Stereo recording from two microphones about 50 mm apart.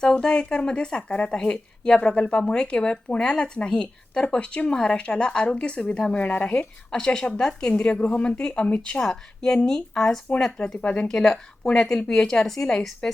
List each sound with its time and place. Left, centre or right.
0.0 s speech: centre
2.0 s a woman's voice: left
6.5 s speech: centre
7.7 s a woman's voice: left
9.0 s speech: centre